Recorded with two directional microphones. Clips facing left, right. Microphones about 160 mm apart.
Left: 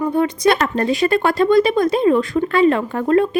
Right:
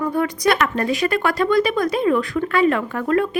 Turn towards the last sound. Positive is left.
turn(degrees=25)  # may be behind; listen again after turning